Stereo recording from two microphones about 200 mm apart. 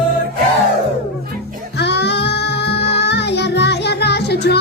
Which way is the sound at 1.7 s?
55° left (ahead or behind).